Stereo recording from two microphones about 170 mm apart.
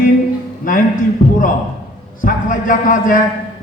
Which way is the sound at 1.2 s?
55° left (ahead or behind).